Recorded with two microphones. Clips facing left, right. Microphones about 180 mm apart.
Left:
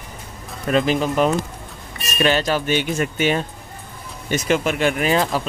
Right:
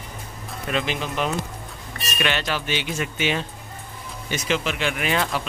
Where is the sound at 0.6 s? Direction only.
40° left (ahead or behind).